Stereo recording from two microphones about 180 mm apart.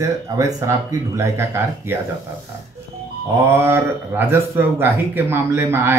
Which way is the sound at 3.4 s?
15° right (ahead or behind).